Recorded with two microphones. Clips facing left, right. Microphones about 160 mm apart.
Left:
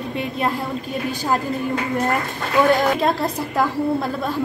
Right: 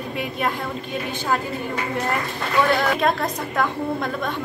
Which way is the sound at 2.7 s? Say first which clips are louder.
Left 2 dB; 40° left (ahead or behind).